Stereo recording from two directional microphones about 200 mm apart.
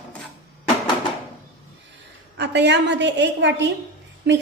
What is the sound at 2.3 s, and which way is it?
A woman's voice, 60° right (ahead or behind).